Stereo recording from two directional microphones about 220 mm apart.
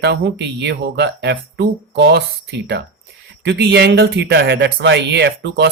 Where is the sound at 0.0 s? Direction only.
50° right (ahead or behind).